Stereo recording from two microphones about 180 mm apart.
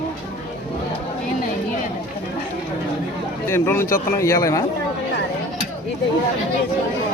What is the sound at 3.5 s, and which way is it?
A man's voice, 15° left (ahead or behind).